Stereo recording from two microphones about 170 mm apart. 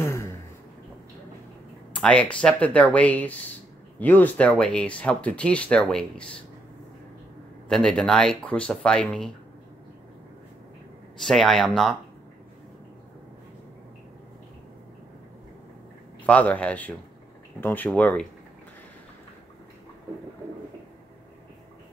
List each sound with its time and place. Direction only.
0.0 s a sound: 15° left (ahead or behind)
2.0 s speech: 5° left (ahead or behind)
7.6 s speech: 5° left (ahead or behind)
11.2 s speech: centre (ahead or behind)
16.3 s speech: 10° left (ahead or behind)